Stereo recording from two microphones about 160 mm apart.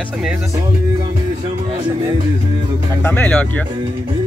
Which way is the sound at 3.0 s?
10° left (ahead or behind).